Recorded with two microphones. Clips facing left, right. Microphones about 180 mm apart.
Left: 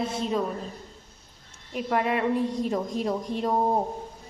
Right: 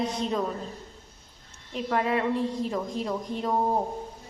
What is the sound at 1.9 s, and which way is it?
A woman's voice, 15° left (ahead or behind).